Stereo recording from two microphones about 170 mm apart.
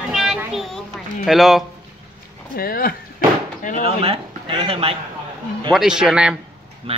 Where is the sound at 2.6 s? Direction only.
60° left (ahead or behind).